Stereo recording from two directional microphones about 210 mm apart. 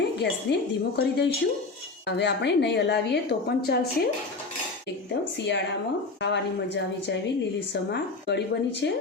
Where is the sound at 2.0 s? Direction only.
55° left (ahead or behind).